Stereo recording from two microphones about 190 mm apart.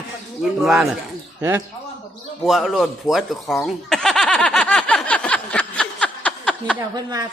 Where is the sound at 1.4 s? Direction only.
15° right (ahead or behind).